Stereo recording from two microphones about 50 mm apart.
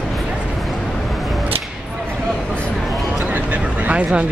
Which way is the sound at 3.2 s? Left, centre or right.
Right.